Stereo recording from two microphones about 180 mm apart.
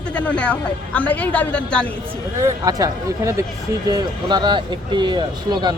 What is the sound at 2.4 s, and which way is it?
Speech, 20° right (ahead or behind).